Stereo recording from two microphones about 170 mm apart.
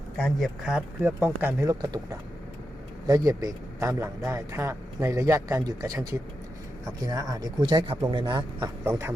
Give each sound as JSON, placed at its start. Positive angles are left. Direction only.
{"t": 0.2, "sound": "a man's voice", "side_deg": 0}